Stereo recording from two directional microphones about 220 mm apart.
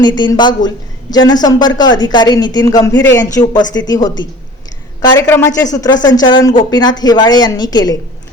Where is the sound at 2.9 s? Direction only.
55° left (ahead or behind).